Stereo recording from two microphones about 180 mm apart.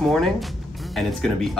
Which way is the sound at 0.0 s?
Centre (ahead or behind).